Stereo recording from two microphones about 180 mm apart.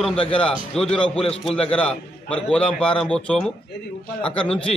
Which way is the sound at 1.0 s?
30° left (ahead or behind).